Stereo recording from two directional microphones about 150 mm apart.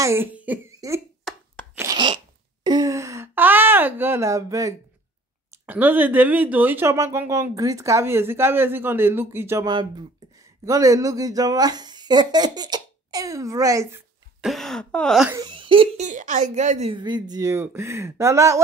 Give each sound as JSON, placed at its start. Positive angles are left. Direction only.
{"t": 0.0, "sound": "speech", "side_deg": -15}
{"t": 0.7, "sound": "speech", "side_deg": -20}
{"t": 1.3, "sound": "chopping", "side_deg": 0}
{"t": 1.8, "sound": "sneeze", "side_deg": -30}
{"t": 5.7, "sound": "speech", "side_deg": -10}
{"t": 9.7, "sound": "speech", "side_deg": -30}
{"t": 14.4, "sound": "speech", "side_deg": 0}
{"t": 15.3, "sound": "speech", "side_deg": -30}
{"t": 16.1, "sound": "a woman's voice", "side_deg": -55}
{"t": 16.9, "sound": "speech", "side_deg": -30}